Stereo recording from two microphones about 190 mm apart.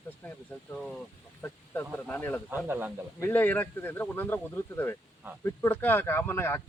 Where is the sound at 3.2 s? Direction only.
10° left (ahead or behind).